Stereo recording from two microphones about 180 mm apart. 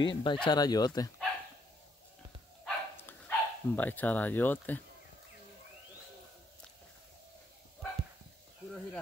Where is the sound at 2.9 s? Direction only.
10° left (ahead or behind).